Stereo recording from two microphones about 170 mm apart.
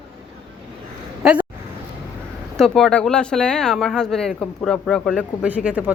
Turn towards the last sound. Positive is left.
turn(degrees=-10)  # may be behind; listen again after turning